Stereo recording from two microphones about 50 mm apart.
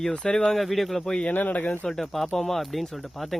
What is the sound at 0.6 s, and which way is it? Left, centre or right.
Speech, centre.